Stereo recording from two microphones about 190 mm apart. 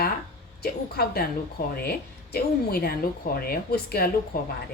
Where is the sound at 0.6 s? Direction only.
55° left (ahead or behind).